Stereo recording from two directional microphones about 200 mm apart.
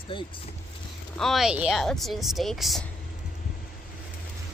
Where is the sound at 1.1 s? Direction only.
Centre (ahead or behind).